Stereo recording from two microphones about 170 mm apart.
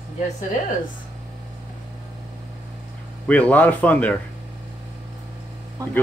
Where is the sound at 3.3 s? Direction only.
10° left (ahead or behind).